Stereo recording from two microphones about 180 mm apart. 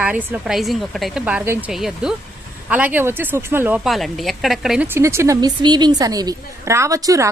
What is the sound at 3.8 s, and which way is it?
A woman's voice, centre (ahead or behind).